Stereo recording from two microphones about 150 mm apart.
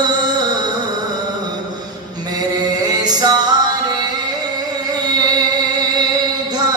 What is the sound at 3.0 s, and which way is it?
Music, 30° right (ahead or behind).